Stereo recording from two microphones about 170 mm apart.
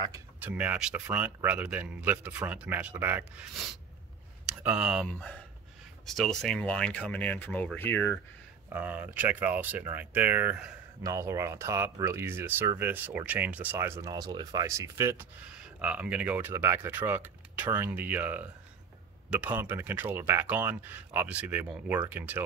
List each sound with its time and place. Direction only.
0.0 s speech: 15° right (ahead or behind)
4.5 s speech: 5° right (ahead or behind); by 8.2 s 10° left (ahead or behind)
8.6 s speech: 10° right (ahead or behind)